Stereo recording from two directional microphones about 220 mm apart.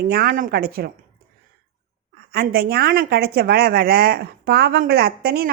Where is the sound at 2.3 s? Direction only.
45° right (ahead or behind).